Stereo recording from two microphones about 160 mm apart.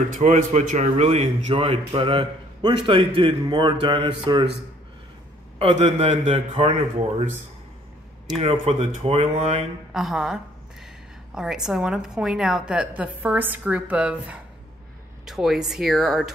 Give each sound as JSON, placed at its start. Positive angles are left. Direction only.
{"t": 0.1, "sound": "a man's voice", "side_deg": -50}
{"t": 5.6, "sound": "a man's voice", "side_deg": -45}
{"t": 8.4, "sound": "a man's voice", "side_deg": -35}
{"t": 9.9, "sound": "a woman's voice", "side_deg": -5}